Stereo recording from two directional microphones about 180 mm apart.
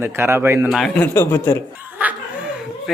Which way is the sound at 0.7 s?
Centre (ahead or behind).